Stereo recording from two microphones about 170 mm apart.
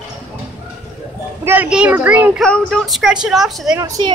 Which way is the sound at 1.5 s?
10° right (ahead or behind).